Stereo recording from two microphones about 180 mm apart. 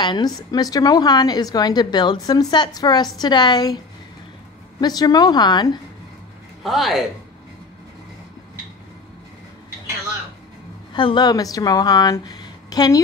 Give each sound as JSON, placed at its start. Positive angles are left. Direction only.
{"t": 0.0, "sound": "a woman's voice", "side_deg": 25}
{"t": 6.6, "sound": "a man's voice", "side_deg": 0}
{"t": 10.9, "sound": "speech", "side_deg": 25}